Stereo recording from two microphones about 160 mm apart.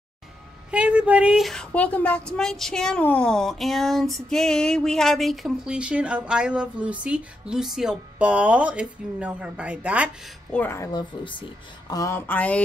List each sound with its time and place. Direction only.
0.7 s a woman's voice: 10° right (ahead or behind)
10.5 s a woman's voice: 15° left (ahead or behind); by 11.4 s 30° left (ahead or behind)
11.9 s speech: 20° left (ahead or behind)